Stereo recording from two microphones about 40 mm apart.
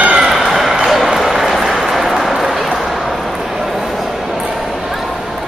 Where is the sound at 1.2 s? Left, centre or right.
Centre.